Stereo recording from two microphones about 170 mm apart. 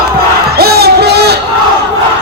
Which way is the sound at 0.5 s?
70° right (ahead or behind).